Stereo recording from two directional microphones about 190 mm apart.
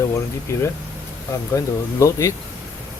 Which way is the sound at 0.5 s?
15° left (ahead or behind).